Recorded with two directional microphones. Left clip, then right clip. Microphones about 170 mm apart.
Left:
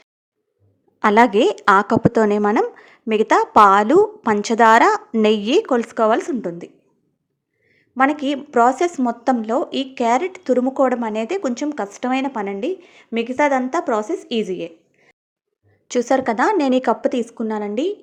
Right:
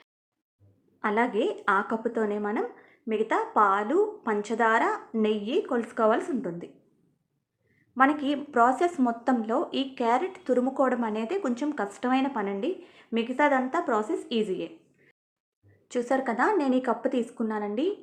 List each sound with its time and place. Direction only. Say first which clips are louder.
0.9 s a woman's voice: left 12 dB; 60° left (ahead or behind)
7.9 s speech: left 6 dB; 40° left (ahead or behind)